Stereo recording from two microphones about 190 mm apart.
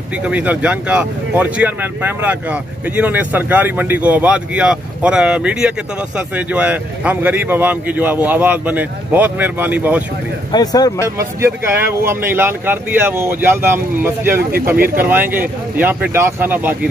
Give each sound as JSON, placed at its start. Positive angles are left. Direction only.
{"t": 0.2, "sound": "speech", "side_deg": -5}
{"t": 10.5, "sound": "speech", "side_deg": 20}
{"t": 11.1, "sound": "speech", "side_deg": -15}